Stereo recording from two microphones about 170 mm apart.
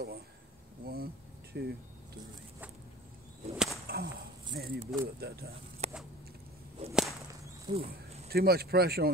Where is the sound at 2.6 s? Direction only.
10° right (ahead or behind).